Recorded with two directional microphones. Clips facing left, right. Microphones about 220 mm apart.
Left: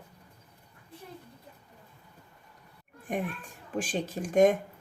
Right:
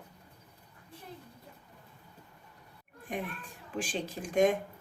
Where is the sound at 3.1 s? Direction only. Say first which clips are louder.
Left 5 dB; 50° left (ahead or behind).